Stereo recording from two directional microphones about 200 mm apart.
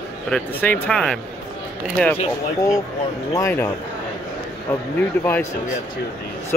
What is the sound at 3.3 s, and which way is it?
Speech, 15° left (ahead or behind).